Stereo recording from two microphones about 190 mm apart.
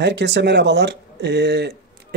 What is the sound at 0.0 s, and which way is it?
Speech, 65° right (ahead or behind).